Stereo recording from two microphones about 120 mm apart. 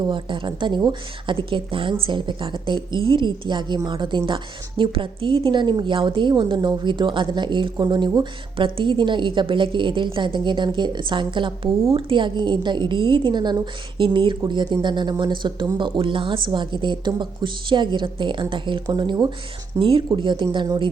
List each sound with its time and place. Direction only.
0.0 s a woman's voice: 40° right (ahead or behind)